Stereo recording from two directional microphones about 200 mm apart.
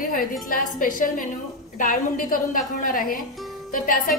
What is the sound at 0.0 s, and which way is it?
A woman's voice, 45° left (ahead or behind).